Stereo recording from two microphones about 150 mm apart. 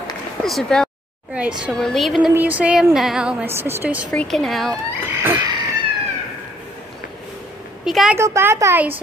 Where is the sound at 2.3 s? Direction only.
10° right (ahead or behind).